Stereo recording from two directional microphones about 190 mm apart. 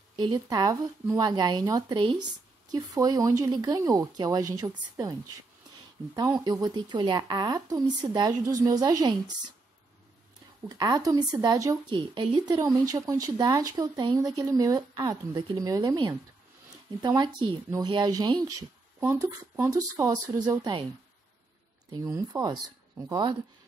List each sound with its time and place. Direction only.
0.1 s speech: 20° right (ahead or behind)
6.4 s speech: 20° right (ahead or behind)
10.7 s speech: 20° right (ahead or behind)
21.9 s speech: 20° right (ahead or behind)